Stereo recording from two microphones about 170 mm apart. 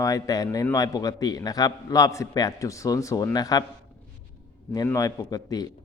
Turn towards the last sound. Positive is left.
turn(degrees=20)  # may be behind; listen again after turning